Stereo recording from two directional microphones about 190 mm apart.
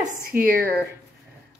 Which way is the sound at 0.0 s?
45° right (ahead or behind).